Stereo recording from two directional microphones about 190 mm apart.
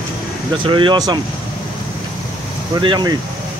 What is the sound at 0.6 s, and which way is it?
Speech, 25° right (ahead or behind).